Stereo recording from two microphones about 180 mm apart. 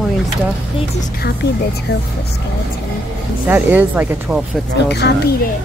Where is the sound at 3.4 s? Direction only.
10° right (ahead or behind).